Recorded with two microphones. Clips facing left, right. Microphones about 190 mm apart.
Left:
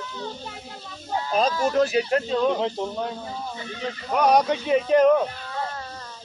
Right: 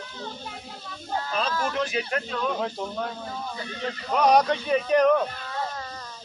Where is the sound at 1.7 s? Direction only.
40° left (ahead or behind); by 3.1 s 20° left (ahead or behind).